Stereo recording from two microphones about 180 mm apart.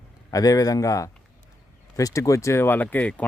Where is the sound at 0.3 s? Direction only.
20° left (ahead or behind).